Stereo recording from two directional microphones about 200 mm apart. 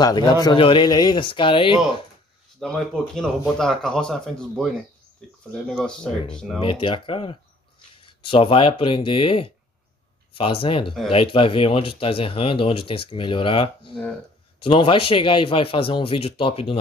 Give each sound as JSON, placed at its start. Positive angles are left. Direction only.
{"t": 0.0, "sound": "speech", "side_deg": 20}
{"t": 2.6, "sound": "speech", "side_deg": 0}
{"t": 6.6, "sound": "speech", "side_deg": 25}